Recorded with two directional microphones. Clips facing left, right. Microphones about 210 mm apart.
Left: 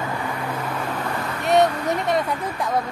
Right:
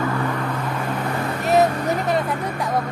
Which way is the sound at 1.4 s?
Centre (ahead or behind).